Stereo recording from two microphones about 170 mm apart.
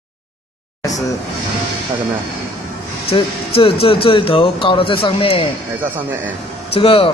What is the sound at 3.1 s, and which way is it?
Speech, 35° left (ahead or behind).